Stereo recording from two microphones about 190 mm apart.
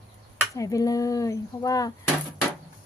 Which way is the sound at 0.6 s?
15° left (ahead or behind).